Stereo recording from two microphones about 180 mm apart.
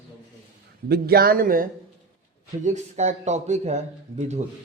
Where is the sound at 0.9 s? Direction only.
60° right (ahead or behind).